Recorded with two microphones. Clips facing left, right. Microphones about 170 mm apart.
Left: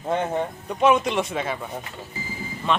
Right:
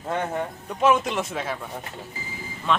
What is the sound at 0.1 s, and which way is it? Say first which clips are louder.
Speech: left 3 dB; 20° left (ahead or behind).